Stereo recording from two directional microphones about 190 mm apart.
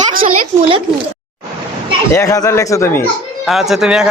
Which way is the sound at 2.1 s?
20° left (ahead or behind).